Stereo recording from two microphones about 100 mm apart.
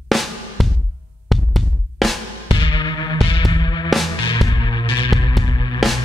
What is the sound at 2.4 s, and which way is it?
Music, 55° left (ahead or behind).